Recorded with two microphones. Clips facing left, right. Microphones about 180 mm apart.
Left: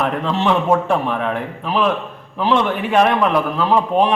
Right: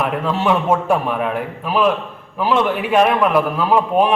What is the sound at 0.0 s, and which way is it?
A man's voice, 10° right (ahead or behind).